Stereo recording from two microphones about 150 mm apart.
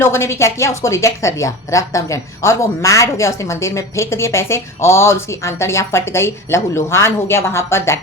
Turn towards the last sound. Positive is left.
turn(degrees=15)  # may be behind; listen again after turning